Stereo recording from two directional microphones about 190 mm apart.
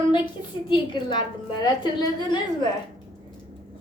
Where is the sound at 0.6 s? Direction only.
25° left (ahead or behind).